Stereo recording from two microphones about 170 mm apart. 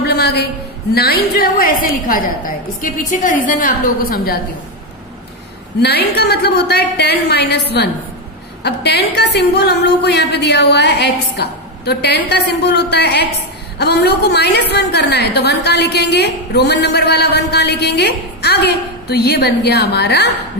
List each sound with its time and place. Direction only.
0.0 s a sound: 70° left (ahead or behind)
0.9 s a woman's voice: 65° left (ahead or behind)
5.8 s a woman's voice: 70° left (ahead or behind)
8.6 s a woman's voice: 75° left (ahead or behind)